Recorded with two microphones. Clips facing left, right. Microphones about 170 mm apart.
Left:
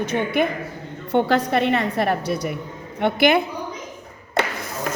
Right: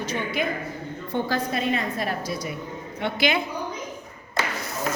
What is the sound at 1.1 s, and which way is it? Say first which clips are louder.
A woman's voice: left 8 dB; 70° left (ahead or behind).